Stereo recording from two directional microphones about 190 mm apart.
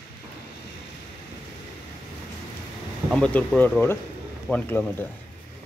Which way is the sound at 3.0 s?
5° left (ahead or behind).